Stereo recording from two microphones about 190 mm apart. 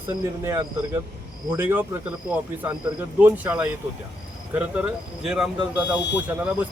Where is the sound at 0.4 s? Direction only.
20° right (ahead or behind).